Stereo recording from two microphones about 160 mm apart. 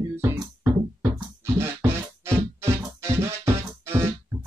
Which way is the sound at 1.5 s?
15° right (ahead or behind).